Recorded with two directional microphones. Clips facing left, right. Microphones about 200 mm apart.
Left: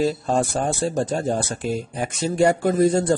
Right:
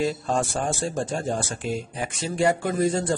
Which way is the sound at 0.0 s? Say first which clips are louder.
Left 4 dB; 35° left (ahead or behind).